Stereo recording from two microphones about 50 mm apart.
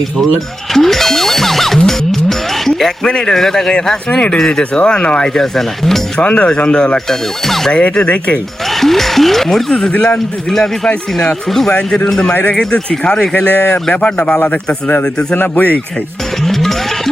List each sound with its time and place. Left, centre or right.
0.7 s music: centre
2.6 s speech: centre
5.3 s speech: centre
6.2 s speech: left; by 7.7 s centre
7.7 s speech: left
8.7 s speech: centre
12.4 s speech: left
15.4 s speech: left
16.4 s music: centre